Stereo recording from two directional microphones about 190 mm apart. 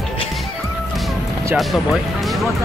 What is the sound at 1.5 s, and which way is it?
Speech, centre (ahead or behind).